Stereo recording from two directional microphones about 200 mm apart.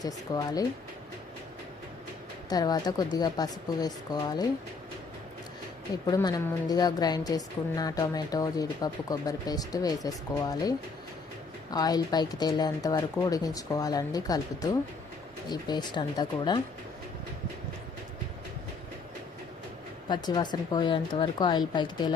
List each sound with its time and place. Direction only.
0.0 s a woman's voice: 20° left (ahead or behind)
2.5 s a woman's voice: 20° left (ahead or behind)
6.1 s a woman's voice: 20° left (ahead or behind)
20.1 s a woman's voice: 20° left (ahead or behind)